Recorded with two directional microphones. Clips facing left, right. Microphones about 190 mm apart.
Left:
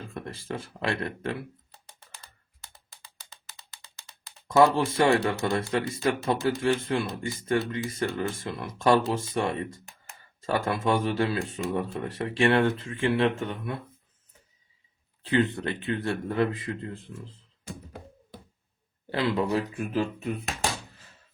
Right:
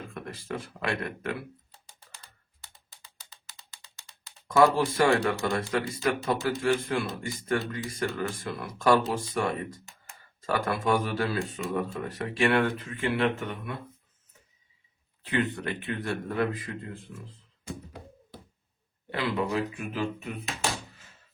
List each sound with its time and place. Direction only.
0.1 s speech: 30° left (ahead or behind)
3.2 s a sound: 60° left (ahead or behind)
4.5 s speech: 25° left (ahead or behind)
10.4 s speech: 25° left (ahead or behind)
15.2 s speech: 30° left (ahead or behind)
19.1 s speech: 35° left (ahead or behind)